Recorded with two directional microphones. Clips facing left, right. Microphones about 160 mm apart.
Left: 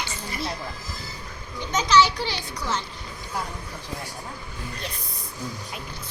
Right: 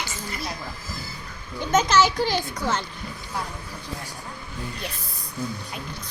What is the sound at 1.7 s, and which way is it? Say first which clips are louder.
A child's voice: right 1 dB; 50° right (ahead or behind).